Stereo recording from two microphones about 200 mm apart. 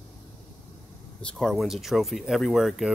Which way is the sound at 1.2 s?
5° left (ahead or behind).